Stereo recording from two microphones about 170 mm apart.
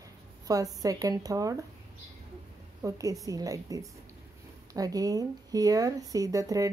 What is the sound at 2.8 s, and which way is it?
A woman's voice, 20° right (ahead or behind).